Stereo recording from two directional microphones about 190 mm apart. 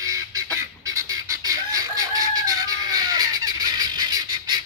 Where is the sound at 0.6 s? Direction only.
15° right (ahead or behind).